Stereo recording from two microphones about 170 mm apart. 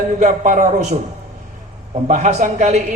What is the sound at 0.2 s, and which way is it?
Speech, 50° right (ahead or behind).